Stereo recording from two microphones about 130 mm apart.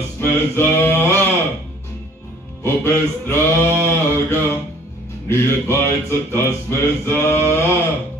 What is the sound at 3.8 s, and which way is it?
Music, 20° left (ahead or behind).